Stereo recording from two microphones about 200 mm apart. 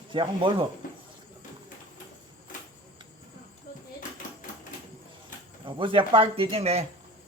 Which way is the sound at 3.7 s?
45° left (ahead or behind).